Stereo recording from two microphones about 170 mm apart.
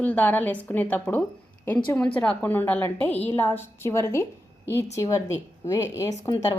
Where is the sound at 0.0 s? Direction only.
10° left (ahead or behind).